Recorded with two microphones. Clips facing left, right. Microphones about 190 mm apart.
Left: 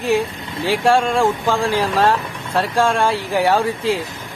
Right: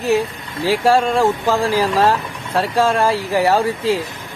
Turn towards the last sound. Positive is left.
turn(degrees=0)  # may be behind; listen again after turning